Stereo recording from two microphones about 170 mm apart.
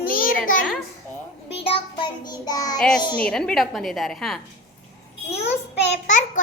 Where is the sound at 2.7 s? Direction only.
5° left (ahead or behind).